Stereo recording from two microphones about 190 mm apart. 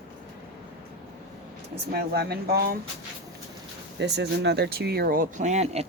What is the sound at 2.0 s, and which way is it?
Speech, 55° right (ahead or behind).